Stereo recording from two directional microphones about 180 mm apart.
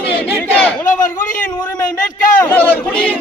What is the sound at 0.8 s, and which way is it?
Speech, 45° left (ahead or behind).